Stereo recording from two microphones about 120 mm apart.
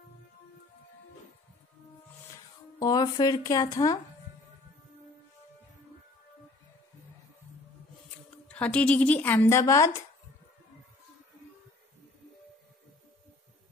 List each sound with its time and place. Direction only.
2.3 s speech: 30° left (ahead or behind)
8.5 s speech: 10° left (ahead or behind); by 10.0 s 25° left (ahead or behind)